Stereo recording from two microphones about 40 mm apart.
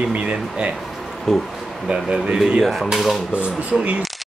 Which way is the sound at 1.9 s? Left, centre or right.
Centre.